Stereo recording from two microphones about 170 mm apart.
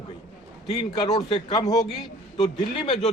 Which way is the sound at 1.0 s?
30° left (ahead or behind).